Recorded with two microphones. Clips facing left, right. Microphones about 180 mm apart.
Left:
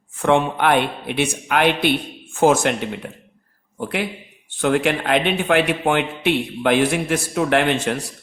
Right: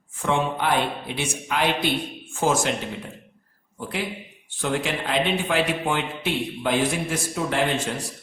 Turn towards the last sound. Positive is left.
turn(degrees=65)  # may be behind; listen again after turning